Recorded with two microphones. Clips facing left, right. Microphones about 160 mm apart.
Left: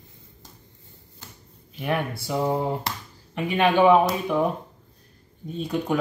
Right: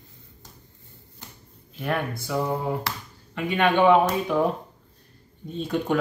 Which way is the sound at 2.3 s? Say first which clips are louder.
Left 2 dB; 20° left (ahead or behind).